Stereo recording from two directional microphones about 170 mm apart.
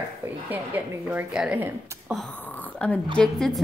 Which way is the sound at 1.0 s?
5° right (ahead or behind).